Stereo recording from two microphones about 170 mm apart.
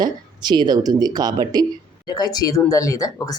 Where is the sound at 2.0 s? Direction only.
25° left (ahead or behind).